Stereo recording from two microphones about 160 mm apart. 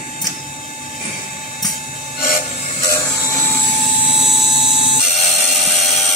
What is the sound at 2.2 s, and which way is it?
Wood, 60° left (ahead or behind).